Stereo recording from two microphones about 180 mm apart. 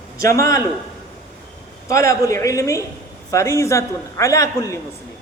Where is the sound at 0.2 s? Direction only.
15° left (ahead or behind).